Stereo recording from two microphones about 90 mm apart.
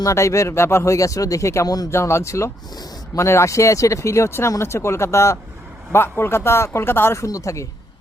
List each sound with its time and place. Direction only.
0.0 s speech: 35° left (ahead or behind)
1.9 s speech: 30° left (ahead or behind)